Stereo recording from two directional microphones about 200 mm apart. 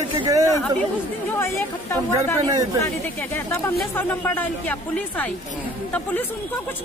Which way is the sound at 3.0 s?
10° left (ahead or behind).